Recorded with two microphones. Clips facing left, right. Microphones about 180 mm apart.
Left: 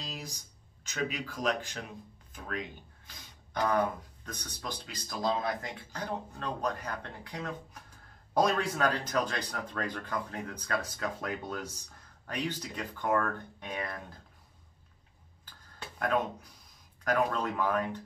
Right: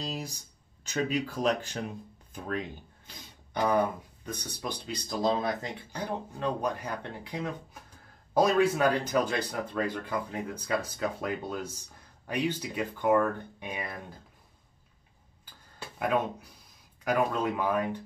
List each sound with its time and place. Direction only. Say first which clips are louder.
1.0 s speech: right 4 dB; 30° right (ahead or behind)
3.5 s speech: right 3 dB; 15° right (ahead or behind)
4.8 s speech: right 4 dB; 25° right (ahead or behind)
6.3 s speech: right 6 dB; 10° right (ahead or behind)
16.0 s speech: right 2 dB; 5° right (ahead or behind)